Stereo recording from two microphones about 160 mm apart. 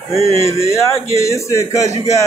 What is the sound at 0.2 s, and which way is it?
Speech, 40° right (ahead or behind).